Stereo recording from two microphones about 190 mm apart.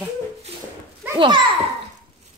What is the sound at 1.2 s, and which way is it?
Speech, 25° right (ahead or behind).